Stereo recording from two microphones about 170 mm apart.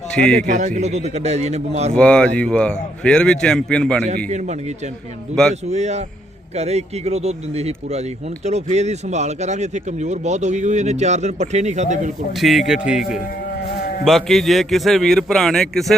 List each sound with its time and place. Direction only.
0.4 s speech: 45° right (ahead or behind)
2.0 s speech: 5° left (ahead or behind)
4.3 s speech: 40° right (ahead or behind)
5.6 s speech: 40° right (ahead or behind)
12.3 s speech: centre (ahead or behind)